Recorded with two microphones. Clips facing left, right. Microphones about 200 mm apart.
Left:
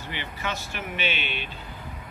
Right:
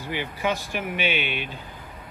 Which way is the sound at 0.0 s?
10° right (ahead or behind).